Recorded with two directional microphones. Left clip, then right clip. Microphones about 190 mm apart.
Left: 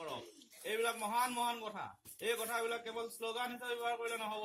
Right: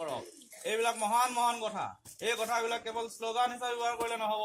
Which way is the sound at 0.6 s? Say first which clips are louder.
Right 6 dB; 45° right (ahead or behind).